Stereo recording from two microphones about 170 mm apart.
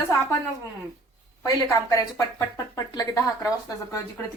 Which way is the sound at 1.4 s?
20° left (ahead or behind).